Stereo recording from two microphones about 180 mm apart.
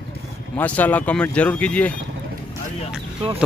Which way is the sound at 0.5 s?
10° left (ahead or behind).